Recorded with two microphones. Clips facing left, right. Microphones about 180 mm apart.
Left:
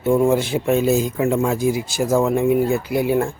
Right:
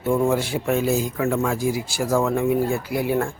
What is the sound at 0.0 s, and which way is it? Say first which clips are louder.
Speech: left 4 dB; 20° left (ahead or behind).